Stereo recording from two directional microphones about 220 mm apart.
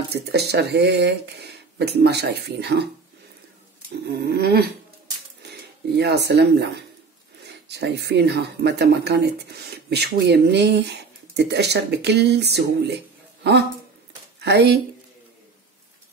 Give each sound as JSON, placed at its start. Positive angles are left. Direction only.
{"t": 0.1, "sound": "speech", "side_deg": -50}
{"t": 4.0, "sound": "speech", "side_deg": -45}